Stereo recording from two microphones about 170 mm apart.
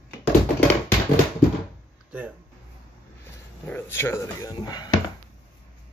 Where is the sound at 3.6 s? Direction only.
10° left (ahead or behind).